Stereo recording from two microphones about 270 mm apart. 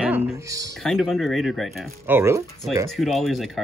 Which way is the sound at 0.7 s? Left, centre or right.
Centre.